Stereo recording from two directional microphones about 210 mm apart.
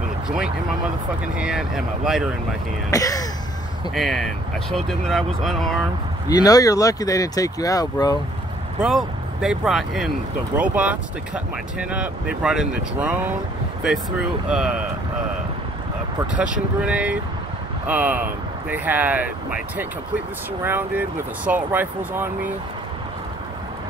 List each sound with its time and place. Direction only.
1.3 s speech: 5° right (ahead or behind)
2.9 s speech: 15° left (ahead or behind)
3.9 s speech: centre (ahead or behind)
6.2 s speech: 15° left (ahead or behind)
8.7 s speech: 5° right (ahead or behind)
14.5 s speech: 5° right (ahead or behind)
16.5 s speech: 5° right (ahead or behind)